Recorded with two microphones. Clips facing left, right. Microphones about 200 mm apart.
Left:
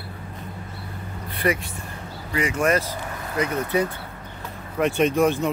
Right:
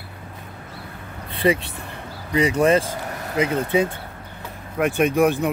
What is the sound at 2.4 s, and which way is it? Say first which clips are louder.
Speech: right 5 dB; 35° right (ahead or behind).